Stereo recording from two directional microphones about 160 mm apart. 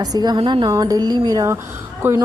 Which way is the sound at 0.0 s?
25° right (ahead or behind).